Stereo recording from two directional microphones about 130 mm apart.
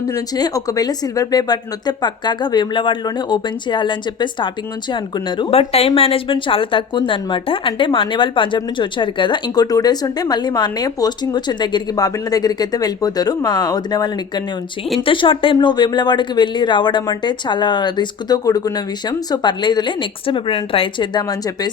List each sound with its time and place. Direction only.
0.1 s a woman's voice: 30° left (ahead or behind)